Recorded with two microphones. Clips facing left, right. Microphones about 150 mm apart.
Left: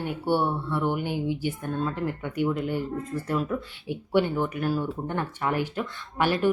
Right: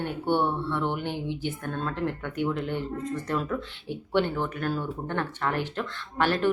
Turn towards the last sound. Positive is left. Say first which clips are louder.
# left 1 dB
turn(degrees=10)  # may be behind; listen again after turning